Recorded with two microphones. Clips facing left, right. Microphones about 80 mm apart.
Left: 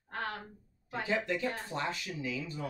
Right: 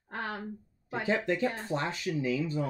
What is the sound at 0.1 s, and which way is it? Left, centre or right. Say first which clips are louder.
Speech: right 2 dB; centre.